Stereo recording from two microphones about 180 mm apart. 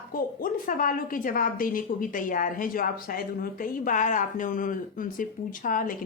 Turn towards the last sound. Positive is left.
turn(degrees=50)  # may be behind; listen again after turning